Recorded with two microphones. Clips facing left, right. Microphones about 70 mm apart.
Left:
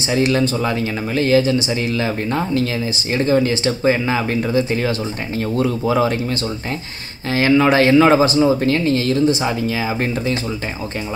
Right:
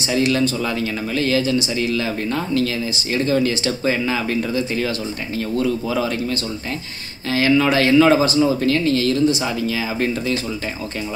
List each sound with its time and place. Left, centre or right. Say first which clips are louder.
0.1 s speech: left 2 dB; left
0.7 s speech: left 2 dB; left
4.3 s speech: left 3 dB; left
7.3 s speech: left 3 dB; left
8.4 s speech: left 2 dB; left
8.6 s speech: left 1 dB; left